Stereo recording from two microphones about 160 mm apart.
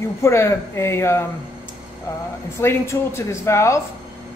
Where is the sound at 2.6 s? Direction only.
15° left (ahead or behind).